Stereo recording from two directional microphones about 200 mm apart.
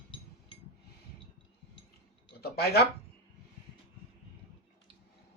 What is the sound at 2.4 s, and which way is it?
Speech, 50° left (ahead or behind).